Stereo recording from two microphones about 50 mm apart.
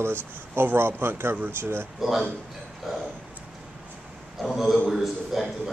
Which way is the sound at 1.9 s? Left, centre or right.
Centre.